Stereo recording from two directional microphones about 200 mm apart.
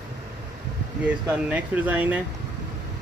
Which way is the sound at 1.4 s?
5° right (ahead or behind).